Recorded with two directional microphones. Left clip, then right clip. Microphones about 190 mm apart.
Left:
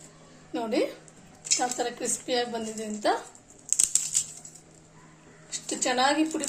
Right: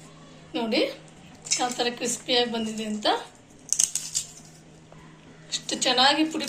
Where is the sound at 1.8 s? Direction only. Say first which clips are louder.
Right 3 dB; 55° left (ahead or behind).